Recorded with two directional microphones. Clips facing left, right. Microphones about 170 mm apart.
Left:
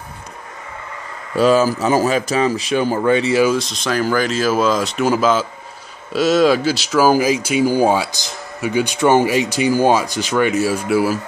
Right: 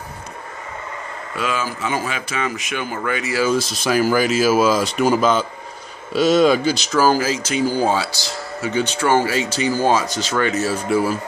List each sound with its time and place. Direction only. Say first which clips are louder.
1.3 s speech: left 11 dB; 35° left (ahead or behind)
3.5 s speech: right 1 dB; 5° right (ahead or behind)